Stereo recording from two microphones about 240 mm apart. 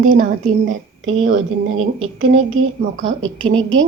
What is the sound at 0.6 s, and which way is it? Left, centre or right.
A woman's voice, right.